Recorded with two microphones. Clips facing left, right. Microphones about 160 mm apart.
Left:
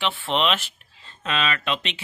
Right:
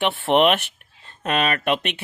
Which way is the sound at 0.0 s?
60° right (ahead or behind).